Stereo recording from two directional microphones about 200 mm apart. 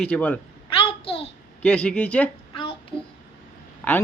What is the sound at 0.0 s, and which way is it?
Speech, 5° left (ahead or behind).